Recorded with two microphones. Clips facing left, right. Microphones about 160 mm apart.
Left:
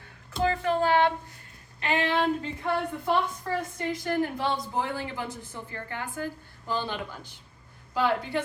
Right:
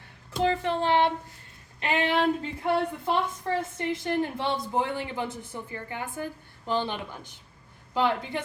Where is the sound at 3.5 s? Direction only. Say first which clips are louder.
Right 2 dB; 25° right (ahead or behind).